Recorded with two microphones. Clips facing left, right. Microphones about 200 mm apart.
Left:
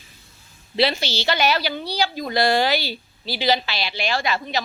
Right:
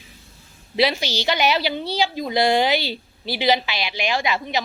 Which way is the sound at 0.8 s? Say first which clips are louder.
Right 1 dB; 15° right (ahead or behind).